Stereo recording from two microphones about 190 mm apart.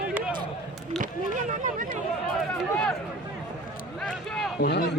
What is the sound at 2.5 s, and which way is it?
Speech, 5° left (ahead or behind).